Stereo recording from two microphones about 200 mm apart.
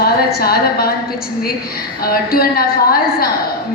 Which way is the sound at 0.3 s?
50° left (ahead or behind).